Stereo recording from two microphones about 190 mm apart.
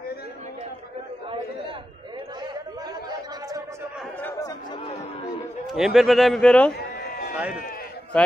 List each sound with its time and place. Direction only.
3.1 s chatter: 20° right (ahead or behind)
4.2 s chatter: 15° left (ahead or behind)
5.7 s a man's voice: centre (ahead or behind)
6.7 s a sound: 55° left (ahead or behind)
7.3 s speech: 5° right (ahead or behind)